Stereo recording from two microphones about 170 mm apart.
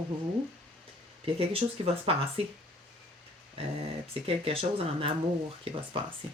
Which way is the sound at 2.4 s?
35° right (ahead or behind).